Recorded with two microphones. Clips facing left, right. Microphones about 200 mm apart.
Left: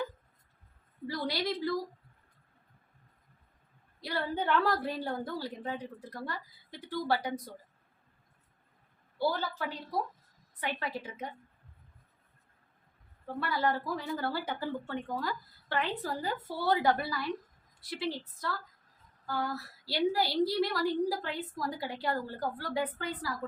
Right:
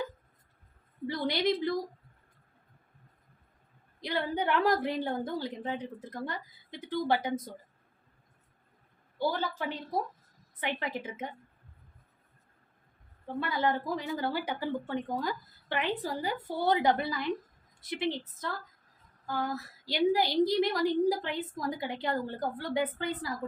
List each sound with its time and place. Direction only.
1.0 s a woman's voice: 20° right (ahead or behind)
4.0 s a woman's voice: 20° right (ahead or behind)
9.4 s a woman's voice: 20° right (ahead or behind)
13.2 s a woman's voice: 20° right (ahead or behind)